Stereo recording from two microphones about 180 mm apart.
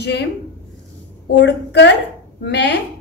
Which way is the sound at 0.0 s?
70° left (ahead or behind).